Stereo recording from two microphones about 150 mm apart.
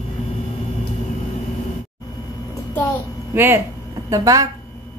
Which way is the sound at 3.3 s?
15° right (ahead or behind).